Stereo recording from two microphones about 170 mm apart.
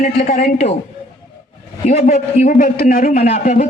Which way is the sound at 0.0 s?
50° left (ahead or behind).